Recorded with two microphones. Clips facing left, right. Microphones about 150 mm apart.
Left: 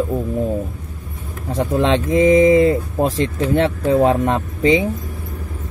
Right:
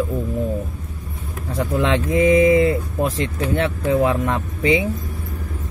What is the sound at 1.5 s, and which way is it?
Speech, 25° left (ahead or behind).